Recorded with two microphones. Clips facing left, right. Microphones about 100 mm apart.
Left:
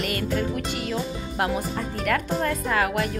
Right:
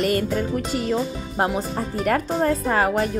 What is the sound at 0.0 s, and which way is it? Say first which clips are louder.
Music: right 4 dB; 40° right (ahead or behind).